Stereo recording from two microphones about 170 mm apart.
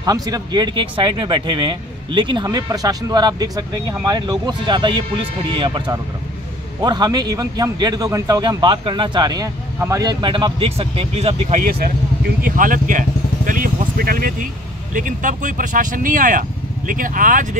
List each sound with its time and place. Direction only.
0.0 s speech: 20° right (ahead or behind); by 11.6 s 40° right (ahead or behind)
12.4 s speech: 50° right (ahead or behind)